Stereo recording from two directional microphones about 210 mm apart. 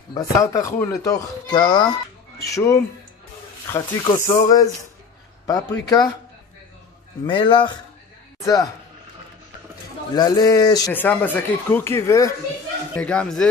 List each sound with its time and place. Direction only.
0.1 s speech: 15° left (ahead or behind)
7.2 s speech: 25° left (ahead or behind)
10.1 s speech: 20° left (ahead or behind)